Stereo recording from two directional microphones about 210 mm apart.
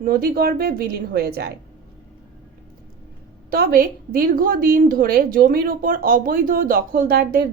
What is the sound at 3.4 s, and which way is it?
A woman's voice, 45° right (ahead or behind).